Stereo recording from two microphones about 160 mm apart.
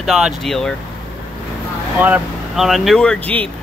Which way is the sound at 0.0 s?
Centre (ahead or behind).